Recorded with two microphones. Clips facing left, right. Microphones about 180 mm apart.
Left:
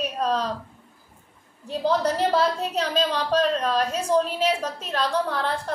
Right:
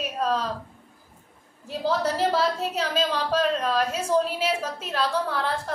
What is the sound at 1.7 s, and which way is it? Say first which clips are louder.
A woman's voice: left 2 dB; 5° right (ahead or behind).